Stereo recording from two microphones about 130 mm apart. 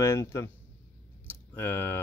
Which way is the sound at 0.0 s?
20° left (ahead or behind).